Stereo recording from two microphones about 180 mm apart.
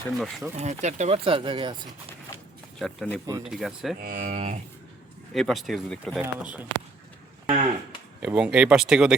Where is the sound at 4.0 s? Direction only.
50° right (ahead or behind).